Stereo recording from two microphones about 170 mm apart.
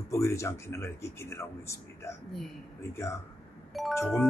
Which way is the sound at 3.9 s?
10° left (ahead or behind).